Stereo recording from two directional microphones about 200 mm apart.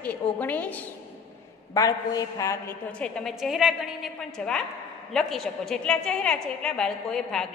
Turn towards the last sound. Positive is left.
turn(degrees=0)  # may be behind; listen again after turning